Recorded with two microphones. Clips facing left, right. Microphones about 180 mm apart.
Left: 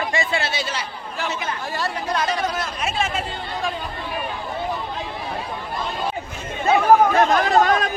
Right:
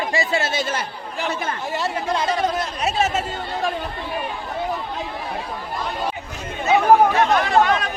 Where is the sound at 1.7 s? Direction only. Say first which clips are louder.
Right 2 dB; 25° right (ahead or behind).